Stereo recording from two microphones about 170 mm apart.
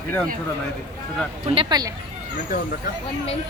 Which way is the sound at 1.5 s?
30° right (ahead or behind).